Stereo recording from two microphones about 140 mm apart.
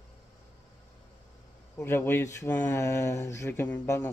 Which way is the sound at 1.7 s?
15° left (ahead or behind).